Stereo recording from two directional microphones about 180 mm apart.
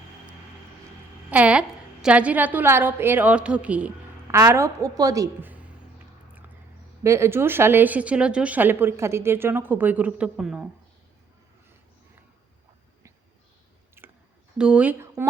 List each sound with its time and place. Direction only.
1.3 s a woman's voice: 5° right (ahead or behind)
7.0 s speech: 15° right (ahead or behind)
14.0 s a sound: 15° right (ahead or behind)
14.6 s speech: 5° right (ahead or behind)